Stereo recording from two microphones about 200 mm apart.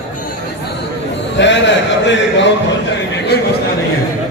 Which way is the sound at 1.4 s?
65° left (ahead or behind).